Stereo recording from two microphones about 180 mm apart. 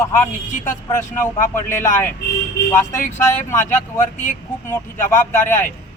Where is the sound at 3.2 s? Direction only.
15° left (ahead or behind).